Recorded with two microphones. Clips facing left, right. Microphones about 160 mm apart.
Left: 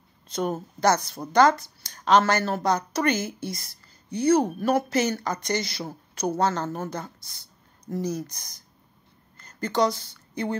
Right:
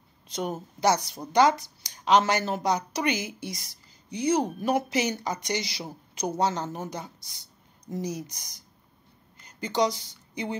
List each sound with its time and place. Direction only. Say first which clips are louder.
0.3 s speech: left 4 dB; 15° right (ahead or behind)